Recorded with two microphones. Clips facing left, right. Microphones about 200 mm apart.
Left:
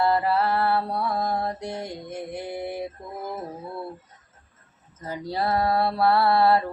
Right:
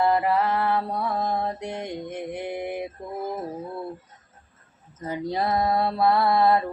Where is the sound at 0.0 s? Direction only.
15° right (ahead or behind).